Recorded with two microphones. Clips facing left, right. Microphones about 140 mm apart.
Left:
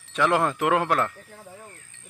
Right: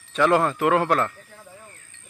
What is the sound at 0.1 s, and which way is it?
Speech, 10° left (ahead or behind).